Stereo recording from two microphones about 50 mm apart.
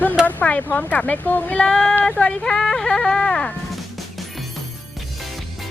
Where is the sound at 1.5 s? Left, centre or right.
Centre.